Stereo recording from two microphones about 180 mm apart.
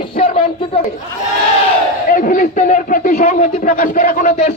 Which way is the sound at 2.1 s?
50° left (ahead or behind).